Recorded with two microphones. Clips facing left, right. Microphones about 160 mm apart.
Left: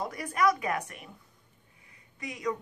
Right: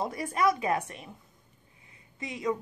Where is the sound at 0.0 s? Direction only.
25° right (ahead or behind).